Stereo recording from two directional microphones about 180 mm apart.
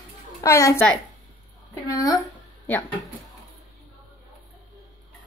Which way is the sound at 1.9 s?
20° left (ahead or behind).